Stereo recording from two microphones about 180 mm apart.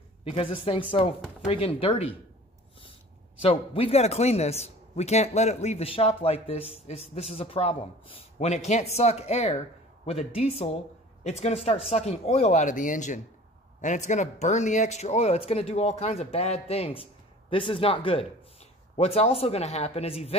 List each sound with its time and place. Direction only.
0.2 s a man's voice: 30° left (ahead or behind)
3.3 s a man's voice: 30° left (ahead or behind)